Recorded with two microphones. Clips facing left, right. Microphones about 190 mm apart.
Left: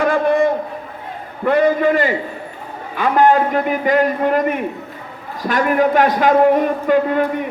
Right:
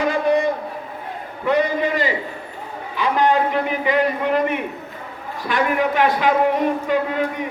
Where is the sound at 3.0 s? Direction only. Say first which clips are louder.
Left 4 dB; 50° left (ahead or behind).